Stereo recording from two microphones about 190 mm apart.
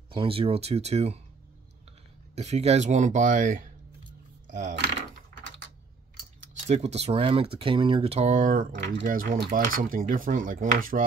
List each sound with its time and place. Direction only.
0.1 s speech: 30° right (ahead or behind)
2.3 s speech: 35° right (ahead or behind)
6.4 s speech: 35° right (ahead or behind)